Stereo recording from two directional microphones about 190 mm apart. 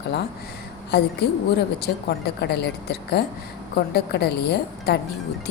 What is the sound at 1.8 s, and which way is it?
A woman's voice, 60° left (ahead or behind).